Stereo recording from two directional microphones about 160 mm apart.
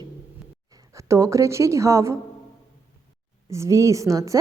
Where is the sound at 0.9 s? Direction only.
20° right (ahead or behind).